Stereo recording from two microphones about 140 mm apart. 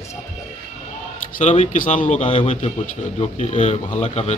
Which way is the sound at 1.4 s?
55° left (ahead or behind).